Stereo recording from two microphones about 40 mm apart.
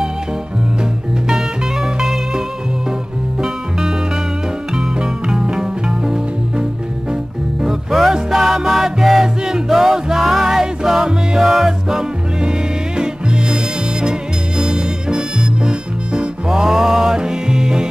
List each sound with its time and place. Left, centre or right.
1.3 s music: centre
7.6 s music: centre
14.6 s music: right